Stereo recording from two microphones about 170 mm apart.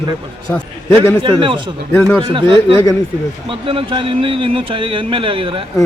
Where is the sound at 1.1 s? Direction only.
30° right (ahead or behind).